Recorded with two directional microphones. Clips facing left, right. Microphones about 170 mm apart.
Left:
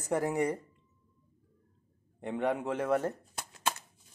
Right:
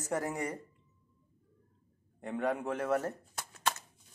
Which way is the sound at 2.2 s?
20° left (ahead or behind).